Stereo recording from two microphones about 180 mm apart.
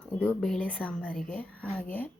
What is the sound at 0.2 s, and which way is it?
Speech, 5° left (ahead or behind).